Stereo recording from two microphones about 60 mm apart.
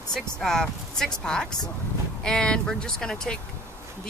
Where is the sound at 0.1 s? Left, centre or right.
Centre.